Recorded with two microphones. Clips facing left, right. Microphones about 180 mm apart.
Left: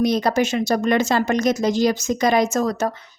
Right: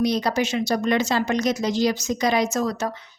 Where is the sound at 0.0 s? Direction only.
50° left (ahead or behind).